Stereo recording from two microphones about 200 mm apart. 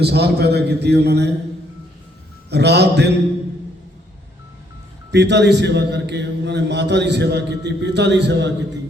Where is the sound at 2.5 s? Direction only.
55° right (ahead or behind).